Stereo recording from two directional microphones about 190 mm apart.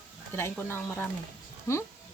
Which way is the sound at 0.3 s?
10° left (ahead or behind).